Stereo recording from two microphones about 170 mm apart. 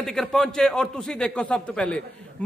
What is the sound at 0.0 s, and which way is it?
A man's voice, centre (ahead or behind).